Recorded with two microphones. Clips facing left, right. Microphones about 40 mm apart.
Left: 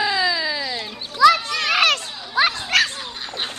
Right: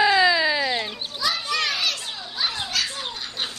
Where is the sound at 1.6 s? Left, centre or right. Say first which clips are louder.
Left 8 dB; left.